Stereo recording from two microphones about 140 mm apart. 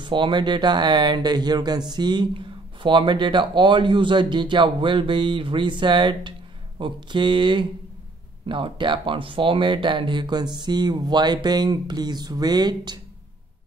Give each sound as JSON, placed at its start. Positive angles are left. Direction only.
{"t": 0.0, "sound": "speech", "side_deg": -35}